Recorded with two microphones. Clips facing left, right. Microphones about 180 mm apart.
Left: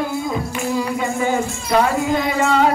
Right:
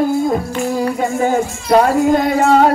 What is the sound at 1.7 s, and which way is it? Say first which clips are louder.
Speech: right 6 dB; 50° right (ahead or behind).